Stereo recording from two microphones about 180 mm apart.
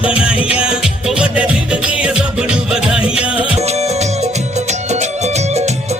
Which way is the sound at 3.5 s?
35° right (ahead or behind).